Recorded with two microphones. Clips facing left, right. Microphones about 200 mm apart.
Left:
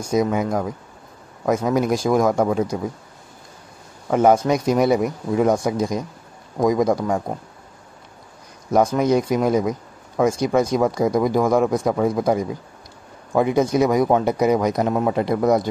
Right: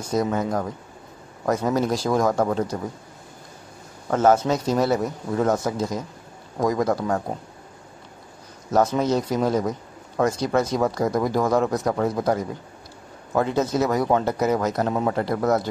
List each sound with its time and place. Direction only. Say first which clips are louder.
0.0 s speech: left 3 dB; 10° left (ahead or behind)
4.1 s speech: left 3 dB; 15° left (ahead or behind)
8.6 s speech: left 3 dB; 10° left (ahead or behind)